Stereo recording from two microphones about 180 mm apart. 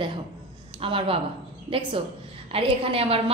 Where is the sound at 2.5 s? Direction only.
30° right (ahead or behind).